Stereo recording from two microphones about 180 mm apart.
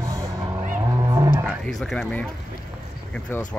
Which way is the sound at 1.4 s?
Centre (ahead or behind).